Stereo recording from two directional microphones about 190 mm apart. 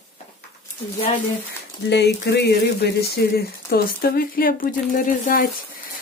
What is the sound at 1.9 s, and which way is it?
Speech, 65° left (ahead or behind).